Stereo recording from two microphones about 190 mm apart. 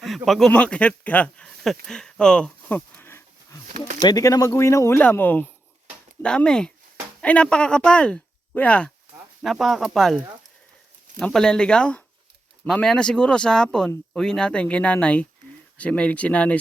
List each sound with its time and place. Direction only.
0.0 s speech: centre (ahead or behind)
11.2 s speech: centre (ahead or behind)